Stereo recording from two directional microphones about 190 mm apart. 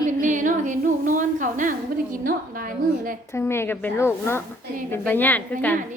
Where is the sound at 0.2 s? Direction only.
40° right (ahead or behind).